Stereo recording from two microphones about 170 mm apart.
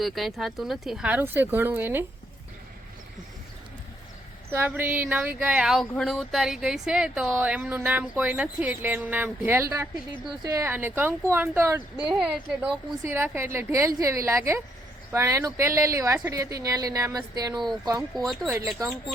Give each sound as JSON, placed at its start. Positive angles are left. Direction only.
{"t": 0.0, "sound": "speech", "side_deg": 0}
{"t": 4.5, "sound": "speech", "side_deg": -10}
{"t": 5.8, "sound": "speech", "side_deg": 5}
{"t": 11.9, "sound": "a woman's voice", "side_deg": -5}
{"t": 18.1, "sound": "speech", "side_deg": 0}
{"t": 18.4, "sound": "speech", "side_deg": -15}